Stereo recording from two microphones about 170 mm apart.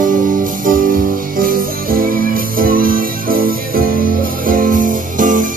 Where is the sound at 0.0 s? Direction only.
50° right (ahead or behind).